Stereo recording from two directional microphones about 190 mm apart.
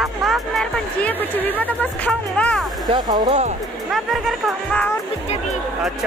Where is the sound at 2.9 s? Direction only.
30° right (ahead or behind).